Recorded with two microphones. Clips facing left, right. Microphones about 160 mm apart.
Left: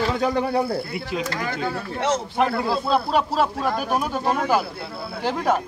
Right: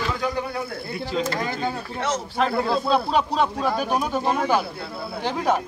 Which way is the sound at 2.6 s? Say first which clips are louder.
Right 1 dB; 5° left (ahead or behind).